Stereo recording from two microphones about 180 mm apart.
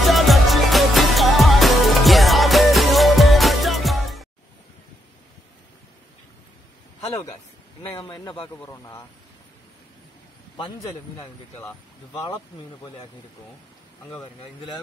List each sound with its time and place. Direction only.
0.0 s music: centre (ahead or behind)
7.8 s speech: 20° left (ahead or behind)
11.6 s speech: 20° left (ahead or behind)